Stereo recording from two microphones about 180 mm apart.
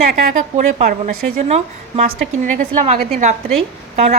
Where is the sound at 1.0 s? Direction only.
35° right (ahead or behind).